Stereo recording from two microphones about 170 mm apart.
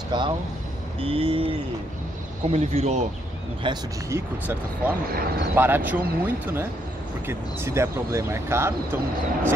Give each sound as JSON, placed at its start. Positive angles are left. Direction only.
{"t": 0.1, "sound": "speech", "side_deg": -25}
{"t": 2.5, "sound": "speech", "side_deg": -40}
{"t": 3.6, "sound": "speech", "side_deg": -30}
{"t": 4.1, "sound": "speech", "side_deg": -10}